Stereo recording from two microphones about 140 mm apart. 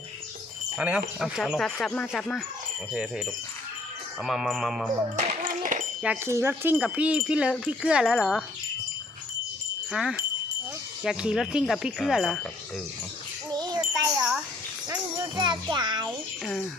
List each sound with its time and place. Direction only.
0.8 s wind chime: 5° right (ahead or behind)
1.2 s speech: centre (ahead or behind)
4.2 s speech: 5° right (ahead or behind)
5.1 s clapping: 65° right (ahead or behind)
6.2 s wind chime: 20° right (ahead or behind)
7.5 s speech: 5° right (ahead or behind)
9.9 s speech: 5° right (ahead or behind)
13.5 s wind chime: 30° right (ahead or behind)
15.4 s a child's voice: 35° right (ahead or behind)
16.0 s a sound: 5° left (ahead or behind)